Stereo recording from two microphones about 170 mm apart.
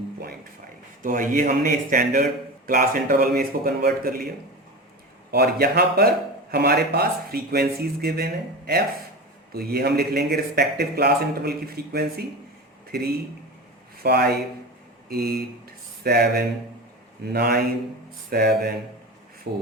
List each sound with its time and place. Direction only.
1.0 s speech: 50° right (ahead or behind)
5.3 s speech: 65° right (ahead or behind)
14.0 s speech: 65° right (ahead or behind)
19.5 s a sound: 80° right